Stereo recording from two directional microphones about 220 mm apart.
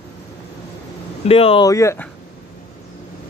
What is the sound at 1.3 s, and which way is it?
Speech, 25° left (ahead or behind).